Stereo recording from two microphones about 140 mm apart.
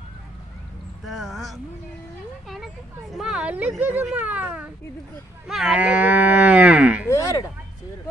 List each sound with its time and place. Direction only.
1.0 s speech: centre (ahead or behind)
3.8 s cattle: 10° right (ahead or behind)
7.1 s speech: 25° left (ahead or behind)